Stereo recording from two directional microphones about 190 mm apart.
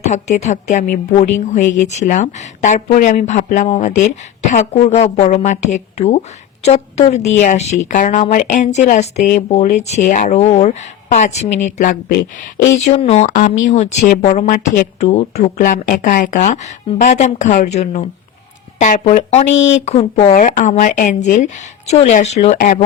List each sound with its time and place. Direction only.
0.0 s a woman's voice: 35° left (ahead or behind)
12.8 s a woman's voice: 30° left (ahead or behind)
22.5 s speech: 45° left (ahead or behind)